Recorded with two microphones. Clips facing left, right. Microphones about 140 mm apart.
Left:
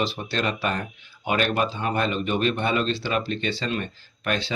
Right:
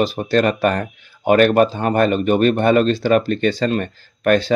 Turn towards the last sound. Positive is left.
turn(degrees=-50)  # may be behind; listen again after turning